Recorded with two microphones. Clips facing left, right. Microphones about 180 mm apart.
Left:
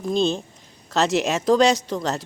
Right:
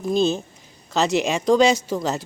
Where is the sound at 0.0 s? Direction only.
5° right (ahead or behind).